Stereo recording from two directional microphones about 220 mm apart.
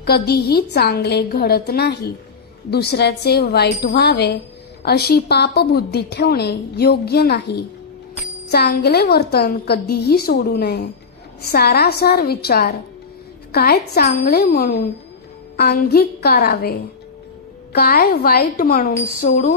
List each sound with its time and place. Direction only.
0.0 s a woman's voice: 45° left (ahead or behind)
14.5 s speech: 35° left (ahead or behind)
15.5 s a woman's voice: 45° left (ahead or behind)
17.7 s a woman's voice: 45° left (ahead or behind)